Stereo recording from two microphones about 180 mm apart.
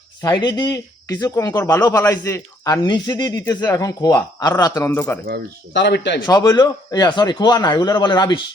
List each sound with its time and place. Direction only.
0.4 s a man's voice: 20° left (ahead or behind)
5.7 s a man's voice: 75° left (ahead or behind)
6.2 s a man's voice: 20° left (ahead or behind)